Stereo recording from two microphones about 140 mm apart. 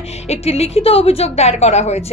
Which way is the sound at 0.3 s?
45° left (ahead or behind).